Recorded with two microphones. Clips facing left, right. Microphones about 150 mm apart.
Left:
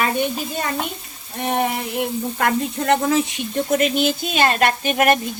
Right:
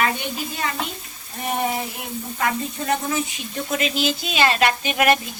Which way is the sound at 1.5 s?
65° left (ahead or behind).